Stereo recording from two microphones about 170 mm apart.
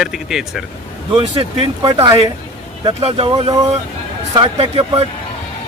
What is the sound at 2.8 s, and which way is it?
Speech, 30° right (ahead or behind).